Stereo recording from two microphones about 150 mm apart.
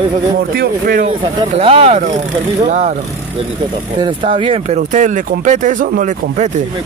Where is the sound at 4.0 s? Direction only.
35° right (ahead or behind).